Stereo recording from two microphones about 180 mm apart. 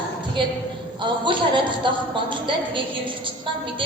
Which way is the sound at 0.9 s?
25° right (ahead or behind).